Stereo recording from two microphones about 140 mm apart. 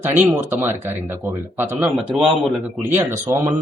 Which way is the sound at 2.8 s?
15° right (ahead or behind).